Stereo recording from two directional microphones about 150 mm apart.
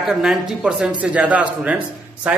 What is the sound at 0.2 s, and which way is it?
A man's voice, 5° right (ahead or behind).